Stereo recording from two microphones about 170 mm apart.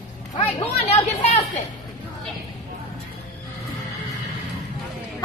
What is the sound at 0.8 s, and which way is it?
Chatter, 40° left (ahead or behind).